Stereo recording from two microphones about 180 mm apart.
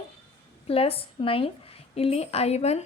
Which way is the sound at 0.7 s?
30° left (ahead or behind).